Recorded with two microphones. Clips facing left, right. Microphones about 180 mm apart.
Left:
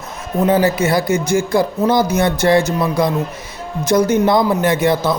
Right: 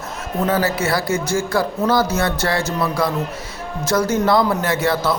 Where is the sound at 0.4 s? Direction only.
15° left (ahead or behind).